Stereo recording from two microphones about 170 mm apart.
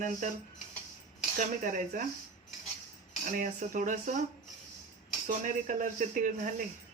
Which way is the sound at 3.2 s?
50° right (ahead or behind).